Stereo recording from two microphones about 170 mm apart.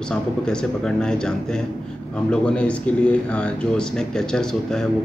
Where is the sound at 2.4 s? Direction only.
5° left (ahead or behind).